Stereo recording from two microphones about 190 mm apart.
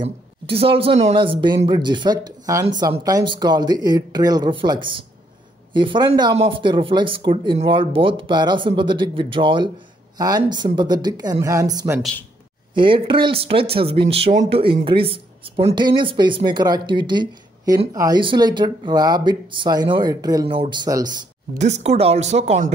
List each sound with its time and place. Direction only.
0.0 s a woman's voice: 30° right (ahead or behind)
21.5 s a woman's voice: 35° right (ahead or behind)